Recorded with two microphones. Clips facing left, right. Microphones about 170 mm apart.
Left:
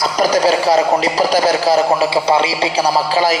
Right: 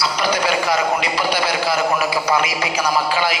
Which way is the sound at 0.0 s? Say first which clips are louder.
Left 6 dB; 40° left (ahead or behind).